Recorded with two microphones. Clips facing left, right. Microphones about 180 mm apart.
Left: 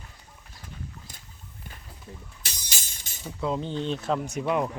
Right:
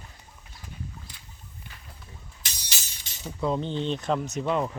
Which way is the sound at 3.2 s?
Centre (ahead or behind).